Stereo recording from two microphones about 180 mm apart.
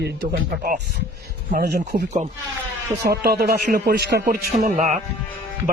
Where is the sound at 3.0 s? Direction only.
60° right (ahead or behind); by 5.0 s 40° right (ahead or behind).